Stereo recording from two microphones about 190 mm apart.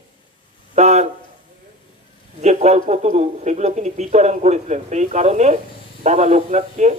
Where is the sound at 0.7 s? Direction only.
35° right (ahead or behind).